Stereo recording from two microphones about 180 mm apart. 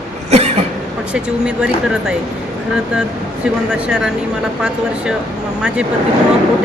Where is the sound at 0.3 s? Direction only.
35° right (ahead or behind).